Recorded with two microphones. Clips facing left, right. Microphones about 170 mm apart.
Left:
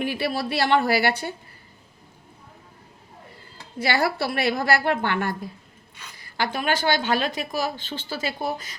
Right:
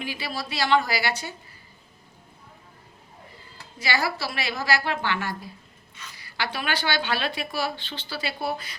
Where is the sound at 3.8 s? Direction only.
60° left (ahead or behind).